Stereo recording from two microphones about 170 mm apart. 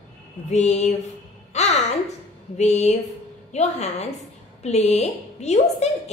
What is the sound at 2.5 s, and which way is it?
A woman's voice, 40° left (ahead or behind).